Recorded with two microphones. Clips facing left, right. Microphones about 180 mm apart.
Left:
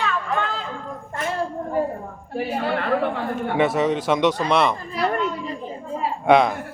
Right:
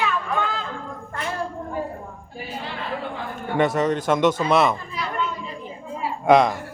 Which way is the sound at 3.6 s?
Centre (ahead or behind).